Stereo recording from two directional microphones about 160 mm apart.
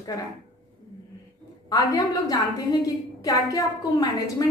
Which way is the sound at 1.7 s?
20° left (ahead or behind).